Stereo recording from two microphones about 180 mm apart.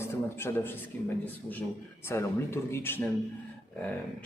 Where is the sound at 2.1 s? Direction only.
15° left (ahead or behind).